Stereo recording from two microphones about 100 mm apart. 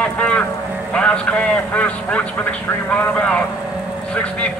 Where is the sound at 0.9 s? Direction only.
10° left (ahead or behind).